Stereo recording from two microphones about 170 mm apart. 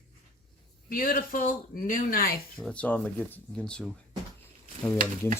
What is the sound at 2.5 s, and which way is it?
Speech, 5° left (ahead or behind).